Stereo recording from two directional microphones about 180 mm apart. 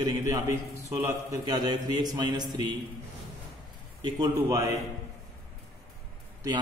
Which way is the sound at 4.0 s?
20° right (ahead or behind).